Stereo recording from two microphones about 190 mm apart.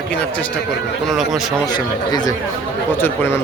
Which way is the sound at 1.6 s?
20° left (ahead or behind).